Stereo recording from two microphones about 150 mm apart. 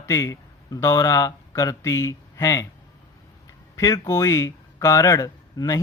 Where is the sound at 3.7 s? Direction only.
20° left (ahead or behind).